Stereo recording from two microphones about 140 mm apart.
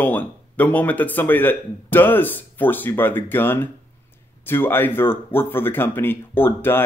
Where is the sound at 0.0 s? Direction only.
15° left (ahead or behind).